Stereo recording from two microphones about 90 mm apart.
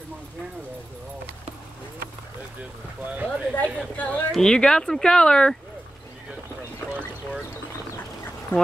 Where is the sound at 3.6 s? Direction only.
15° left (ahead or behind).